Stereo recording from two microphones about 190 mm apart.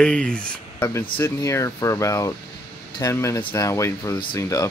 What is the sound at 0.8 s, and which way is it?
Speech, 15° left (ahead or behind).